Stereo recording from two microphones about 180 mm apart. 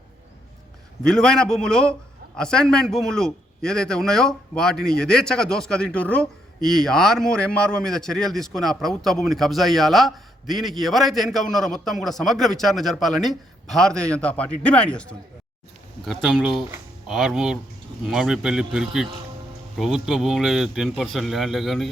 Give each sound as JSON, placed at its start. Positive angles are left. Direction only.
{"t": 1.0, "sound": "a man's voice", "side_deg": 5}
{"t": 16.0, "sound": "a man's voice", "side_deg": 0}